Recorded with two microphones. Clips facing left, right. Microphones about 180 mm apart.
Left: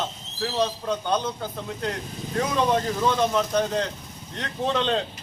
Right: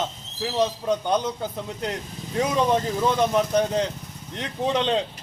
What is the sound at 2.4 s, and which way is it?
A man's voice, 15° right (ahead or behind).